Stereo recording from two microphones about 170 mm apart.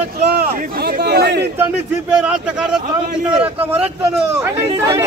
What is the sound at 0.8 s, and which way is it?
Speech, 70° right (ahead or behind).